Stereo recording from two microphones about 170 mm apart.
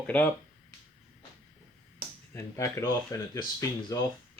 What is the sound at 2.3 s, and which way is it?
Speech, 15° left (ahead or behind).